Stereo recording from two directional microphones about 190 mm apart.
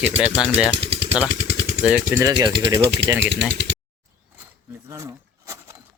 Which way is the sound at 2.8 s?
60° right (ahead or behind).